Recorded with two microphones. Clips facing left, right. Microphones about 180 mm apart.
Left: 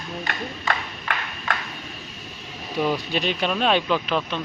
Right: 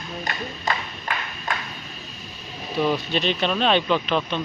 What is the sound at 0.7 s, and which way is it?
Speech, 40° right (ahead or behind).